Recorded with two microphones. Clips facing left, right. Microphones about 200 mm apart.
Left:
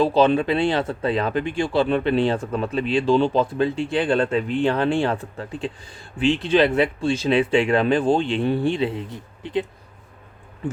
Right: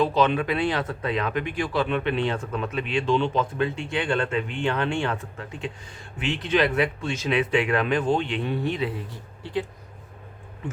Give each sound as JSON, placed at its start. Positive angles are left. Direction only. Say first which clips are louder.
{"t": 0.0, "sound": "speech", "louder": "left 4 dB", "side_deg": 30}